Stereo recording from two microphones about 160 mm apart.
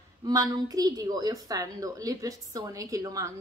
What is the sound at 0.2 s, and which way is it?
A woman's voice, 25° right (ahead or behind).